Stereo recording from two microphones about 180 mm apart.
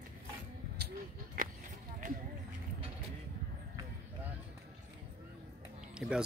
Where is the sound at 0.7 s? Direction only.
55° right (ahead or behind).